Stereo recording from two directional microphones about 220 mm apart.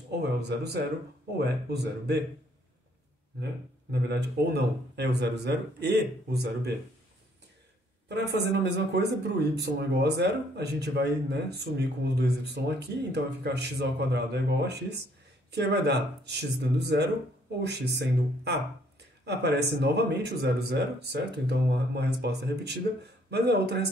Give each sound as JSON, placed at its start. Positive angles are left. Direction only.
{"t": 0.4, "sound": "speech", "side_deg": -50}
{"t": 3.9, "sound": "speech", "side_deg": -50}
{"t": 8.1, "sound": "speech", "side_deg": -50}